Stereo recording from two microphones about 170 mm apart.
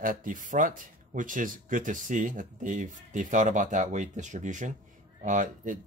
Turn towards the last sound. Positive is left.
turn(degrees=-50)  # may be behind; listen again after turning